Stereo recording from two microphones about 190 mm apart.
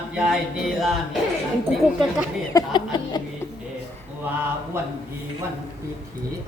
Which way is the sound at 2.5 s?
20° left (ahead or behind).